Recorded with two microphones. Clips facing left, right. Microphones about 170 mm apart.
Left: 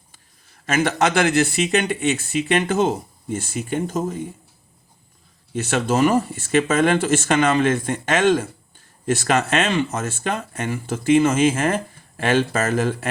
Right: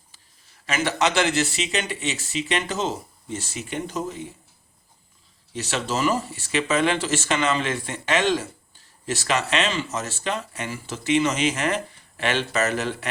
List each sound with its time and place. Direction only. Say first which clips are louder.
0.6 s speech: left 4 dB; 50° left (ahead or behind)
5.5 s speech: left 7 dB; 55° left (ahead or behind)